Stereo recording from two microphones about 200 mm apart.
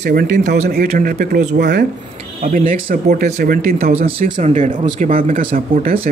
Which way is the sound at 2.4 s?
45° right (ahead or behind).